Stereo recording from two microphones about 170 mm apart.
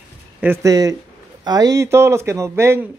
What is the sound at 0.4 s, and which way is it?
Speech, 15° right (ahead or behind).